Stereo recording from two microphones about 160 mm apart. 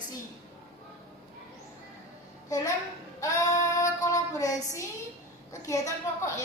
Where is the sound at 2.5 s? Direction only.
20° left (ahead or behind).